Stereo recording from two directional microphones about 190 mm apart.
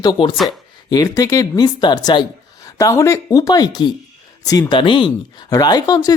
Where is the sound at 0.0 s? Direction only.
25° left (ahead or behind).